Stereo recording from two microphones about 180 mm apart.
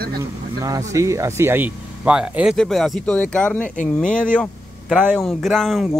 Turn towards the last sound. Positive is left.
turn(degrees=0)  # may be behind; listen again after turning